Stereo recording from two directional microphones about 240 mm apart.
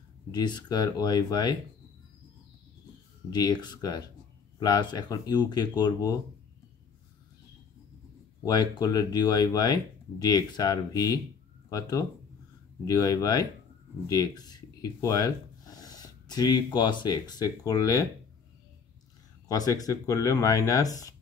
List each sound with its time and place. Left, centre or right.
0.3 s speech: centre
3.3 s speech: centre
8.5 s speech: centre
19.4 s speech: centre